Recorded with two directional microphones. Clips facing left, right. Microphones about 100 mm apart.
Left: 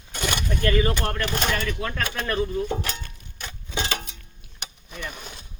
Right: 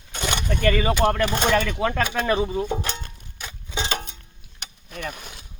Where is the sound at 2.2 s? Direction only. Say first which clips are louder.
Right 3 dB; 90° right.